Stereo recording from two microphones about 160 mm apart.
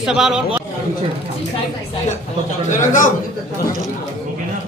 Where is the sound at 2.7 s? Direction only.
50° left (ahead or behind).